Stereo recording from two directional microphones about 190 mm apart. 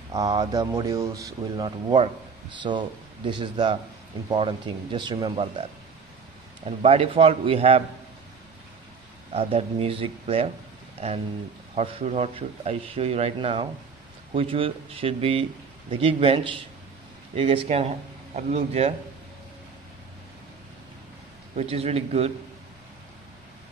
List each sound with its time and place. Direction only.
0.1 s speech: 20° right (ahead or behind)
9.3 s speech: 30° right (ahead or behind)
11.7 s speech: 30° right (ahead or behind)
21.5 s speech: 35° right (ahead or behind)